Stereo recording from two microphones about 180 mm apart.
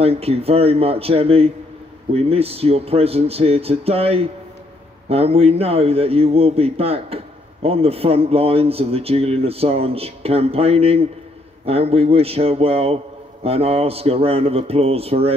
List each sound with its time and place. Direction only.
0.0 s a man's voice: 35° right (ahead or behind)